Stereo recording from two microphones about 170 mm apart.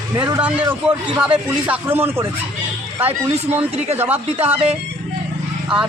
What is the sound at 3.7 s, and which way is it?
Speech, 40° right (ahead or behind).